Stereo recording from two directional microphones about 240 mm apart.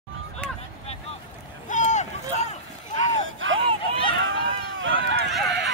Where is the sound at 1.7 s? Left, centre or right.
Left.